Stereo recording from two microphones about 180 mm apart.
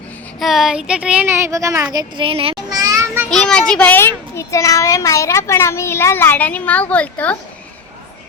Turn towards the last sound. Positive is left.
turn(degrees=10)  # may be behind; listen again after turning